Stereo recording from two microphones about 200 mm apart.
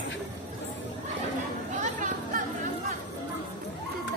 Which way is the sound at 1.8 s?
40° right (ahead or behind).